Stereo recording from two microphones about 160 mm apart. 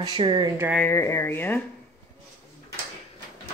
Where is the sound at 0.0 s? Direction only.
30° right (ahead or behind).